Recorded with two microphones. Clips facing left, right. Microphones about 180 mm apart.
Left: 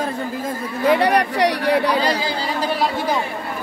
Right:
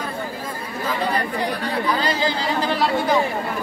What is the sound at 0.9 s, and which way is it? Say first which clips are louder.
Speech: left 7 dB; 75° left (ahead or behind).